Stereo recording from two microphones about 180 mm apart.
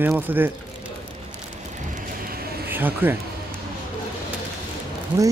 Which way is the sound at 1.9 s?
55° right (ahead or behind).